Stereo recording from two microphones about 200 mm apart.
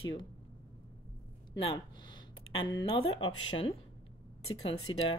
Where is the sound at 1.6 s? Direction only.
25° left (ahead or behind).